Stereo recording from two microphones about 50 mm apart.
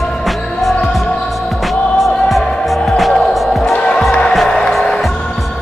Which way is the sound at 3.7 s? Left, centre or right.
Left.